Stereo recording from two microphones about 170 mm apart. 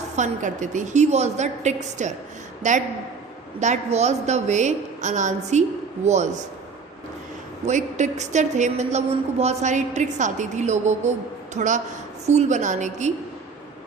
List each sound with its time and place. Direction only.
0.2 s a woman's voice: 45° right (ahead or behind)
7.6 s a woman's voice: 45° right (ahead or behind)